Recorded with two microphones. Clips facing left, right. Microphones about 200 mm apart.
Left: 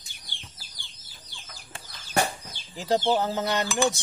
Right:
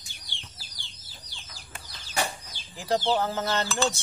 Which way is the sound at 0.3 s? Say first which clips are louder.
Left 1 dB; 50° left (ahead or behind).